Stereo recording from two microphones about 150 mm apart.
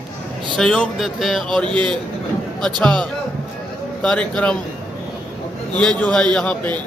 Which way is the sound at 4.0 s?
5° left (ahead or behind).